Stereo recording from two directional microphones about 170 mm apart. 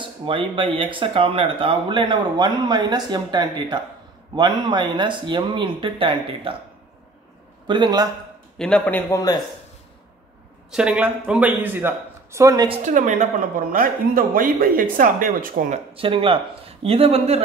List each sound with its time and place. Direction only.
0.0 s speech: 30° right (ahead or behind)
7.6 s speech: 25° right (ahead or behind)
8.5 s a man's voice: 5° left (ahead or behind)
9.1 s speech: 20° left (ahead or behind)
10.7 s a man's voice: 5° right (ahead or behind)
12.8 s speech: 45° right (ahead or behind)
15.9 s speech: 30° right (ahead or behind)